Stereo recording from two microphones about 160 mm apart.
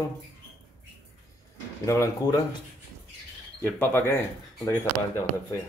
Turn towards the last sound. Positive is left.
turn(degrees=15)  # may be behind; listen again after turning